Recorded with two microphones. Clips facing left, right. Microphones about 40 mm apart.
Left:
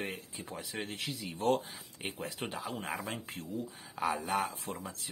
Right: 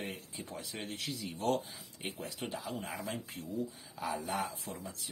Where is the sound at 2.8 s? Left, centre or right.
Centre.